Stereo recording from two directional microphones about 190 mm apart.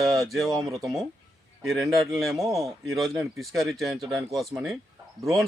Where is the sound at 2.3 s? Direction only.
15° right (ahead or behind).